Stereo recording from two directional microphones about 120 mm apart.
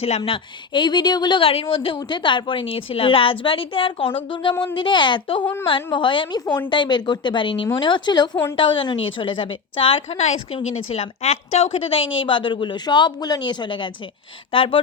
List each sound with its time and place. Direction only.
0.2 s a woman's voice: 40° left (ahead or behind)